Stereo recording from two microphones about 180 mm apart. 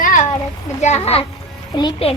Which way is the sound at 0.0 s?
50° left (ahead or behind).